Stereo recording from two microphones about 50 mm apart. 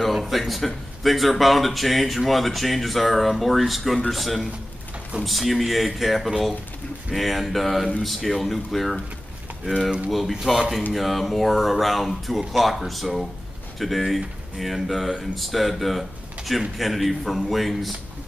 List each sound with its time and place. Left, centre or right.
0.0 s speech: centre
10.5 s speech: centre